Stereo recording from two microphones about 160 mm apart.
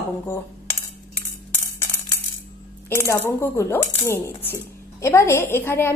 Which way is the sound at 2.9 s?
15° left (ahead or behind).